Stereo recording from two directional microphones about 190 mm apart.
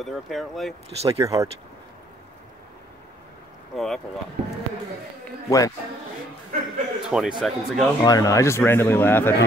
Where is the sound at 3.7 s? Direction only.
Centre (ahead or behind).